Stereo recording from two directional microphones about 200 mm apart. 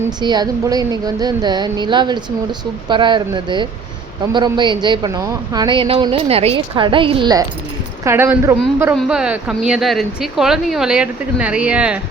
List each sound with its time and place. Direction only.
0.2 s a woman's voice: 20° right (ahead or behind)
8.0 s speech: 10° right (ahead or behind)